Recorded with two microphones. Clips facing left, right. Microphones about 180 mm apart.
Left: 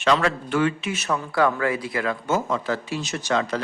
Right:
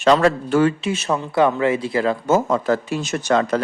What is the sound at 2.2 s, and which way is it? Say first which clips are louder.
Speech: right 6 dB; 45° right (ahead or behind).